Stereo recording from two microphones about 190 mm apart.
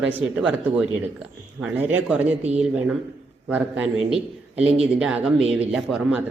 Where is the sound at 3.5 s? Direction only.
5° right (ahead or behind).